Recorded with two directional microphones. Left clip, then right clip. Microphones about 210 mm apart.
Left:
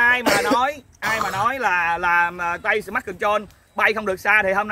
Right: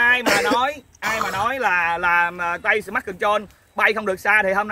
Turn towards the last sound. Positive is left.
turn(degrees=-5)  # may be behind; listen again after turning